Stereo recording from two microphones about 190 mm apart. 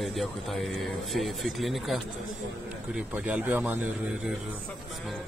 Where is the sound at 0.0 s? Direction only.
Centre (ahead or behind).